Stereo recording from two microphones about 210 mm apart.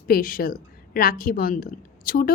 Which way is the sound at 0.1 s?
40° left (ahead or behind).